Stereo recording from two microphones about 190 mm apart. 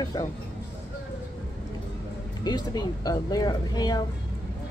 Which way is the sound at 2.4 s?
20° left (ahead or behind).